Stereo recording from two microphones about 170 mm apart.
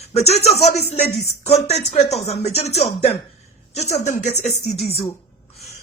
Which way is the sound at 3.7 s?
45° left (ahead or behind).